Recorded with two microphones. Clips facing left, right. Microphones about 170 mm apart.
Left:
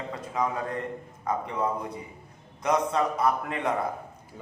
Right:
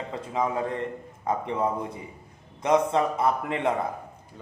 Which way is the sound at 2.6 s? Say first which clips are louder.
Right 3 dB; 25° right (ahead or behind).